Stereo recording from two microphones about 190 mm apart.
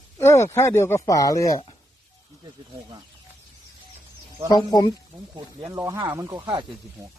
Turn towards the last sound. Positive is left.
turn(degrees=-25)  # may be behind; listen again after turning